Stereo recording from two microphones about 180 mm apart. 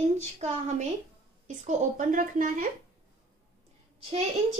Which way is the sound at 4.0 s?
35° right (ahead or behind).